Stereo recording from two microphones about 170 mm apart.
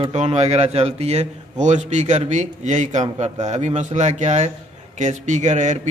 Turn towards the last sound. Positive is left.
turn(degrees=-45)  # may be behind; listen again after turning